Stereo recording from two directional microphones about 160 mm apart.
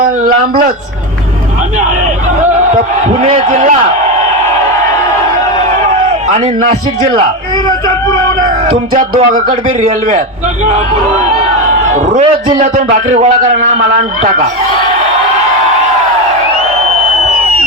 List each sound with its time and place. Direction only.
0.0 s a sound: 55° right (ahead or behind)
3.2 s a man's voice: 45° right (ahead or behind)
6.2 s a man's voice: 45° right (ahead or behind)
8.9 s a man's voice: 60° right (ahead or behind)